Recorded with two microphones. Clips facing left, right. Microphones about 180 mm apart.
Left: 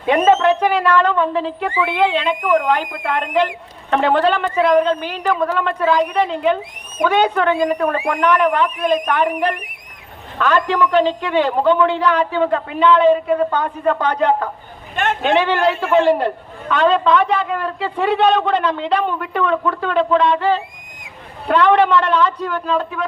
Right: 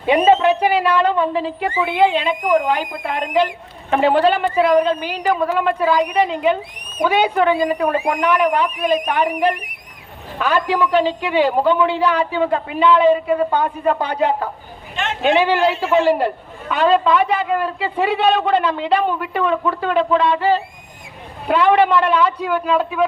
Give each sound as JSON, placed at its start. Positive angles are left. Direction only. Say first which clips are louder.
{"t": 0.1, "sound": "a man's voice", "louder": "even", "side_deg": -15}
{"t": 14.9, "sound": "a sound", "louder": "left 4 dB", "side_deg": 50}
{"t": 15.2, "sound": "a man's voice", "louder": "right 2 dB", "side_deg": -10}
{"t": 15.7, "sound": "a man's voice", "louder": "even", "side_deg": 55}
{"t": 16.0, "sound": "a man's voice", "louder": "left 1 dB", "side_deg": -5}